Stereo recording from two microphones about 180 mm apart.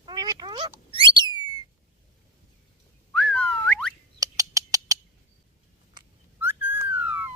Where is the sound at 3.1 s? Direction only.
5° left (ahead or behind).